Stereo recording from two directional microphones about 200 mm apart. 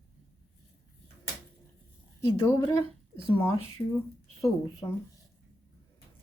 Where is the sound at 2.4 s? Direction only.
15° left (ahead or behind).